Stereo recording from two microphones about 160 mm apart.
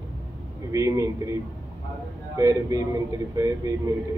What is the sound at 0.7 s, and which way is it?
Speech, 20° right (ahead or behind).